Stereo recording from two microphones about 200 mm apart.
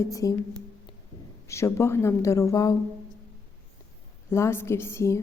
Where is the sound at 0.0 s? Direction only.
15° left (ahead or behind).